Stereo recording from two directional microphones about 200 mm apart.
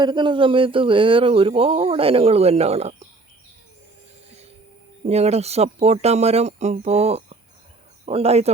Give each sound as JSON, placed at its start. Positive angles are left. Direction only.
{"t": 0.0, "sound": "speech", "side_deg": -25}
{"t": 5.0, "sound": "speech", "side_deg": -30}